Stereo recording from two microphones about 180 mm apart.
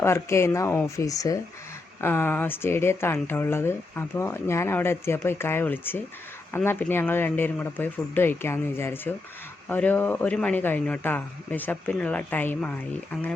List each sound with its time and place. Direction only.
0.0 s speech: 15° left (ahead or behind)